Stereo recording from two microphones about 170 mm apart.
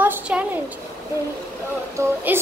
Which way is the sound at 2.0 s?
15° right (ahead or behind).